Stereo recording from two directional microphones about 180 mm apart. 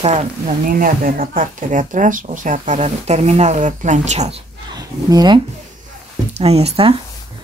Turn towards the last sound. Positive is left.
turn(degrees=-35)  # may be behind; listen again after turning